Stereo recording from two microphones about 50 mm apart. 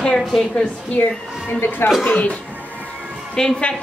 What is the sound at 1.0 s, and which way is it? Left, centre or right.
Speech, left.